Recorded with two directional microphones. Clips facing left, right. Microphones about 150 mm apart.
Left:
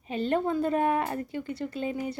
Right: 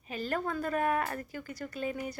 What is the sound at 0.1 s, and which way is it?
Speech, 25° left (ahead or behind).